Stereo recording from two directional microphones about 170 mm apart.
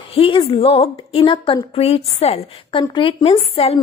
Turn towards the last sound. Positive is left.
turn(degrees=35)  # may be behind; listen again after turning